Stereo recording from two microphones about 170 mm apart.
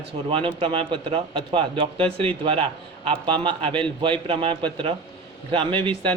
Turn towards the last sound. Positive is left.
turn(degrees=-30)  # may be behind; listen again after turning